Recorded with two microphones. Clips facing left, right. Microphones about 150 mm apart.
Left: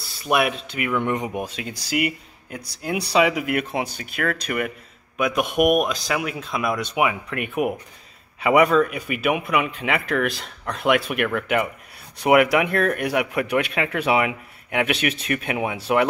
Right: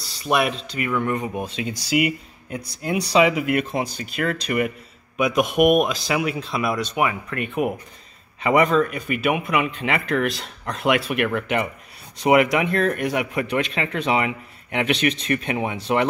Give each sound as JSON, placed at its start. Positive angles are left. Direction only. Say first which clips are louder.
{"t": 0.3, "sound": "speech", "louder": "even", "side_deg": 5}
{"t": 1.0, "sound": "speech", "louder": "even", "side_deg": 20}
{"t": 1.5, "sound": "speech", "louder": "right 4 dB", "side_deg": 0}
{"t": 7.0, "sound": "speech", "louder": "left 1 dB", "side_deg": 10}